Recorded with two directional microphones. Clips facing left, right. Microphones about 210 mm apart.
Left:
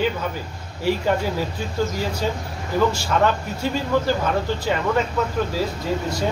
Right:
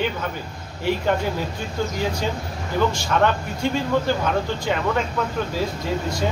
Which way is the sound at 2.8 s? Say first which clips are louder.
Left 1 dB; 5° left (ahead or behind).